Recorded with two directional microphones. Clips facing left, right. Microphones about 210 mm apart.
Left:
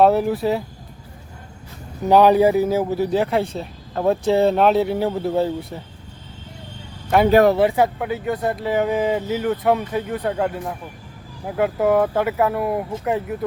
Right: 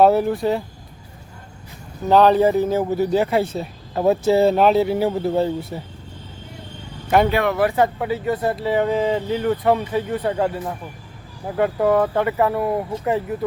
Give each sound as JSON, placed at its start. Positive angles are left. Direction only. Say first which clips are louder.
{"t": 0.0, "sound": "speech", "louder": "right 1 dB", "side_deg": 0}
{"t": 2.0, "sound": "speech", "louder": "left 1 dB", "side_deg": 10}
{"t": 7.3, "sound": "speech", "louder": "left 6 dB", "side_deg": 40}
{"t": 7.8, "sound": "speech", "louder": "even", "side_deg": 0}